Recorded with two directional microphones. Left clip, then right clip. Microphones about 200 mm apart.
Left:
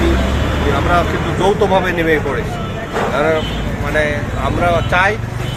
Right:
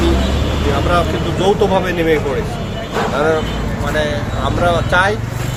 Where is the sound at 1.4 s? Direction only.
5° right (ahead or behind).